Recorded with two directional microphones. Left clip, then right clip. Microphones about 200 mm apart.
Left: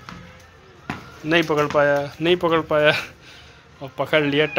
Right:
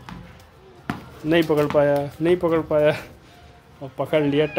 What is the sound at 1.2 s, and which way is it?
Speech, 15° right (ahead or behind).